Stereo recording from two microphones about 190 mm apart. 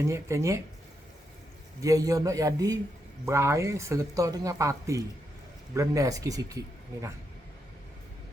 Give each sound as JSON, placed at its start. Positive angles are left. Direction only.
{"t": 0.0, "sound": "speech", "side_deg": -15}
{"t": 1.8, "sound": "speech", "side_deg": -20}